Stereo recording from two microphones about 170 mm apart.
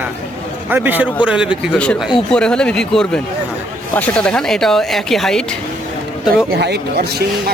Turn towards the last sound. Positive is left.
turn(degrees=-65)  # may be behind; listen again after turning